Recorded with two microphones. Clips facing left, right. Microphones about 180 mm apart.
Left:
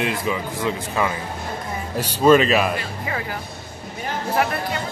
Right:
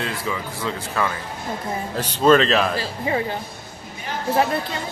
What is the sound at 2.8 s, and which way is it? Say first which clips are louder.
Speech: right 5 dB; 25° right (ahead or behind).